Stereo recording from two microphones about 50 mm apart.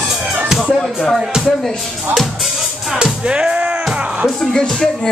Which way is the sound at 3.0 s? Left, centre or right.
Centre.